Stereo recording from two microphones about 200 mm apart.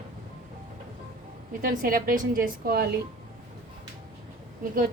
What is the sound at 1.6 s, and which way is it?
A woman's voice, 45° right (ahead or behind).